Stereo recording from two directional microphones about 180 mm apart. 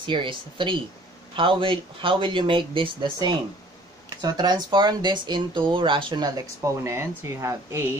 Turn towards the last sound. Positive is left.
turn(degrees=-15)  # may be behind; listen again after turning